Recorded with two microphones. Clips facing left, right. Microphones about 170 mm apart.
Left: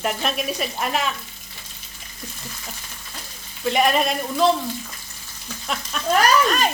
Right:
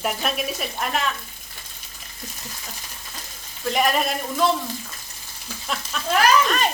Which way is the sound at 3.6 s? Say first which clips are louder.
Left 2 dB; centre (ahead or behind).